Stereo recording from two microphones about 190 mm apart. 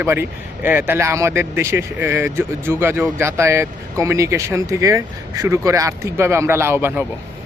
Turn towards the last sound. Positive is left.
turn(degrees=-10)  # may be behind; listen again after turning